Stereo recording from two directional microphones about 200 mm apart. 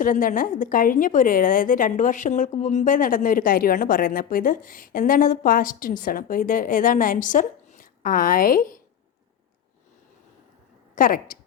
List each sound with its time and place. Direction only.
0.0 s a woman's voice: 45° left (ahead or behind)
10.9 s a woman's voice: 45° left (ahead or behind)